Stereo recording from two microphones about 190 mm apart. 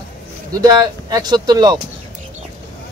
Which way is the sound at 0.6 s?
20° right (ahead or behind).